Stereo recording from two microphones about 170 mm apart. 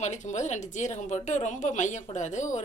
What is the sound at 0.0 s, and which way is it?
A woman's voice, 45° left (ahead or behind).